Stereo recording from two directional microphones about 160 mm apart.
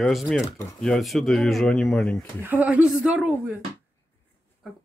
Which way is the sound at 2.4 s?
10° right (ahead or behind).